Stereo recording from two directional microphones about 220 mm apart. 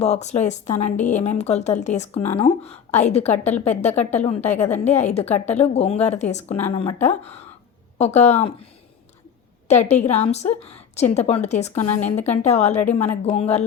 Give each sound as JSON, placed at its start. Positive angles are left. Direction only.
{"t": 0.0, "sound": "a woman's voice", "side_deg": 30}
{"t": 9.6, "sound": "a woman's voice", "side_deg": 30}